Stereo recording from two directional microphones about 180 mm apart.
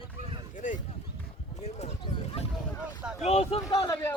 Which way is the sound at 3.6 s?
20° left (ahead or behind).